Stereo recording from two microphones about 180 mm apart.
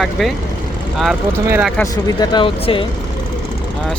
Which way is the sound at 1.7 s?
20° left (ahead or behind).